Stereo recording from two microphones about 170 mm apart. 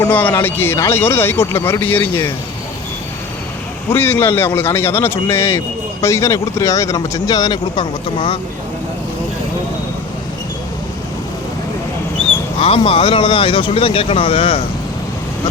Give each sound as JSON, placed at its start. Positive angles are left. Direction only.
{"t": 0.0, "sound": "a man's voice", "side_deg": 10}
{"t": 3.8, "sound": "a man's voice", "side_deg": 15}
{"t": 12.5, "sound": "speech", "side_deg": 35}